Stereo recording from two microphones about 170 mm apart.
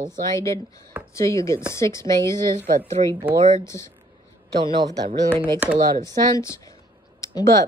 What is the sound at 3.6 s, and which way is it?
Speech, 15° left (ahead or behind).